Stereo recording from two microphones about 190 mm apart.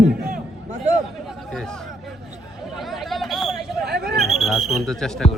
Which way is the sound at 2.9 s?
Centre (ahead or behind).